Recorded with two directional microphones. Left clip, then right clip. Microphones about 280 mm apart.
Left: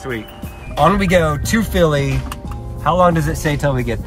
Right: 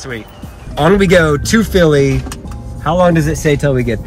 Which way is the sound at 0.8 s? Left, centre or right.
Left.